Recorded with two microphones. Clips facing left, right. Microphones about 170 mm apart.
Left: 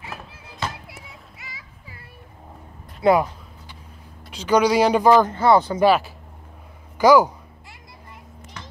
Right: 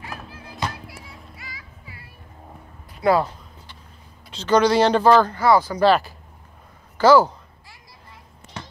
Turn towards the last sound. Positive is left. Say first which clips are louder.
# even
turn(degrees=15)  # may be behind; listen again after turning